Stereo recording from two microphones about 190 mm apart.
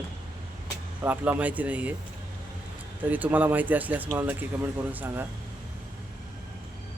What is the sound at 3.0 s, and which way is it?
Speech, 10° right (ahead or behind).